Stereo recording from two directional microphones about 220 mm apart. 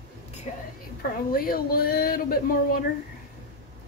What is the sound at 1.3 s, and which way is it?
Speech, 40° left (ahead or behind).